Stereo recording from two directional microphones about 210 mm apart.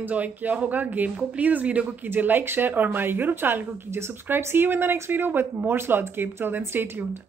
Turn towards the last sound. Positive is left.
turn(degrees=-10)  # may be behind; listen again after turning